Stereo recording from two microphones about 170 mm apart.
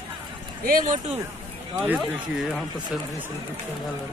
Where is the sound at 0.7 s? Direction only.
55° right (ahead or behind).